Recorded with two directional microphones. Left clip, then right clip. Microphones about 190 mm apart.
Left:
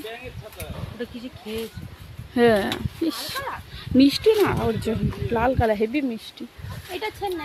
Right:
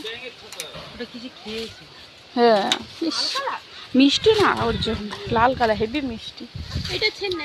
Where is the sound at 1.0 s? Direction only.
5° left (ahead or behind).